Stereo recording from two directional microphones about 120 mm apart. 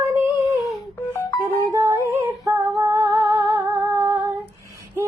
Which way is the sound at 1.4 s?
25° right (ahead or behind).